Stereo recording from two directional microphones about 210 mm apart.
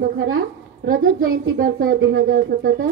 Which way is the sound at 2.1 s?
45° right (ahead or behind).